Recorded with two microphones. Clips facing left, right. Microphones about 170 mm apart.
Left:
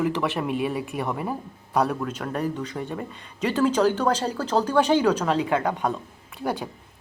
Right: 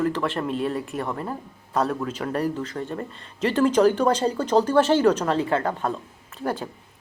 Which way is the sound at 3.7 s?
10° right (ahead or behind).